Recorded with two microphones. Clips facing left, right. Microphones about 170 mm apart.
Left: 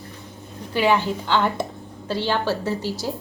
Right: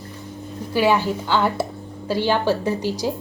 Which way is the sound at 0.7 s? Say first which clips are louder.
Right 1 dB; 10° right (ahead or behind).